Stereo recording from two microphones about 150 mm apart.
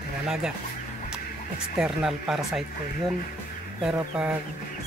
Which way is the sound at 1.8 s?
5° right (ahead or behind).